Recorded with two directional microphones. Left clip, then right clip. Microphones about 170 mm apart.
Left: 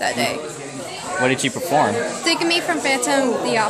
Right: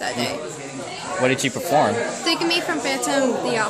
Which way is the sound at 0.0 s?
35° left (ahead or behind).